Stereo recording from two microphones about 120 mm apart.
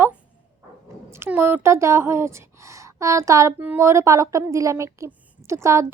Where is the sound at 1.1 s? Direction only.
20° right (ahead or behind).